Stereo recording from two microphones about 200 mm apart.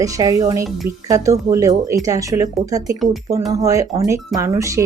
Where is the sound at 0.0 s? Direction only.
15° right (ahead or behind).